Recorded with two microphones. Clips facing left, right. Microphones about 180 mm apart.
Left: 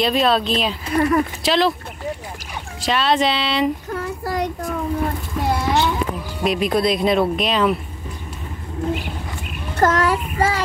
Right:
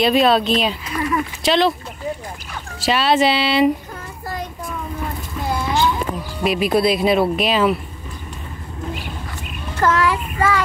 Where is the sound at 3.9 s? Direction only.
75° left (ahead or behind).